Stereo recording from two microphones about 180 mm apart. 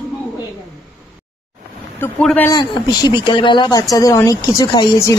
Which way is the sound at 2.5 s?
25° left (ahead or behind).